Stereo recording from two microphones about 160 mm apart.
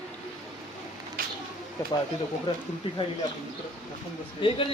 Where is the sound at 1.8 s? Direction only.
25° left (ahead or behind).